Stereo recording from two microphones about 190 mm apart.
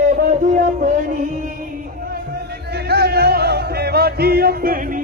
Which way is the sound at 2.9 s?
60° right (ahead or behind).